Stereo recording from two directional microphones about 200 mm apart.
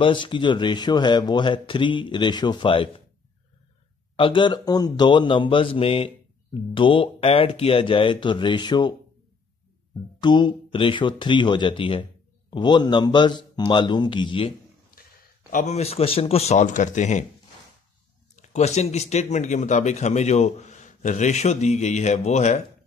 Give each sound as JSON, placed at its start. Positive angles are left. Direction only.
{"t": 0.0, "sound": "a man's voice", "side_deg": 25}
{"t": 4.2, "sound": "a man's voice", "side_deg": 25}
{"t": 10.2, "sound": "a man's voice", "side_deg": 25}
{"t": 15.5, "sound": "speech", "side_deg": 35}
{"t": 18.3, "sound": "speech", "side_deg": 35}